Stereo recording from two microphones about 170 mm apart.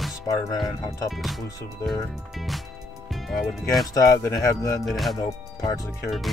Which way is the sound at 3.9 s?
20° left (ahead or behind).